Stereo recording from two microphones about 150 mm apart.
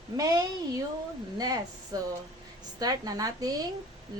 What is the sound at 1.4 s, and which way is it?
Speech, 25° right (ahead or behind).